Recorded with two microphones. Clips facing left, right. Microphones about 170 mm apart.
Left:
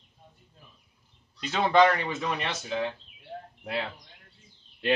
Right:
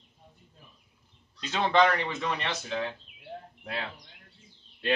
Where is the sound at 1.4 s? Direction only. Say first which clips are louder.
Left 2 dB; 10° left (ahead or behind).